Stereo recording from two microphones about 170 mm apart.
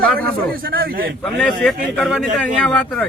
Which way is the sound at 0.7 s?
60° right (ahead or behind).